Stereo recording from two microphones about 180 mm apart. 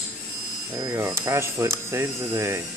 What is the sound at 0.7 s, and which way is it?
Speech, 20° right (ahead or behind).